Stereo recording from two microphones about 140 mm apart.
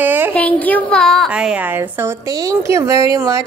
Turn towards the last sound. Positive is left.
turn(degrees=-25)  # may be behind; listen again after turning